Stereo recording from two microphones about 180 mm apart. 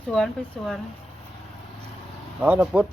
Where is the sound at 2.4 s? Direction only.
10° right (ahead or behind).